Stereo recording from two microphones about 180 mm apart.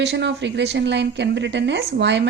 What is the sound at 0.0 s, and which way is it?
A woman's voice, 75° right (ahead or behind).